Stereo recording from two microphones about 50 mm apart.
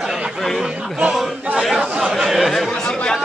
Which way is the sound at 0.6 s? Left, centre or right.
Centre.